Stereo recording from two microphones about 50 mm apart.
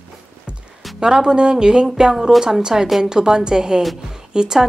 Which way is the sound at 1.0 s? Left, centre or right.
Centre.